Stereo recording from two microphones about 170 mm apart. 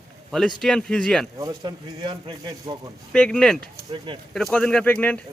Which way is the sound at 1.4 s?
25° right (ahead or behind).